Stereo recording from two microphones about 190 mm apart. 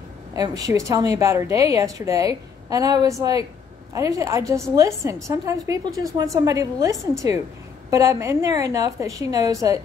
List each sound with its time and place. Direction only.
0.3 s a woman's voice: 20° right (ahead or behind)